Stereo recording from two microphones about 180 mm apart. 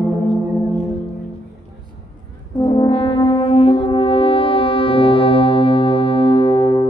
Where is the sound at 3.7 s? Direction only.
30° left (ahead or behind).